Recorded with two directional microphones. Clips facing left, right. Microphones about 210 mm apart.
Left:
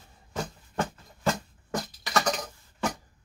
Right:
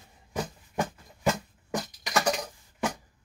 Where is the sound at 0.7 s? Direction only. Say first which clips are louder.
Even; 15° right (ahead or behind).